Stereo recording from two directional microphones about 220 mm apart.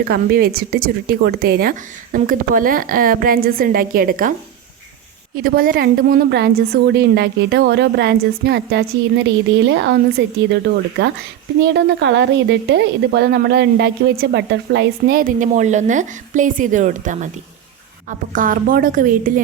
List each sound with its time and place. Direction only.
0.0 s a woman's voice: 40° right (ahead or behind)
5.4 s a woman's voice: 40° right (ahead or behind)